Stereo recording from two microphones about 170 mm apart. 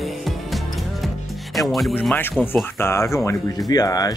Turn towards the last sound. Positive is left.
turn(degrees=20)  # may be behind; listen again after turning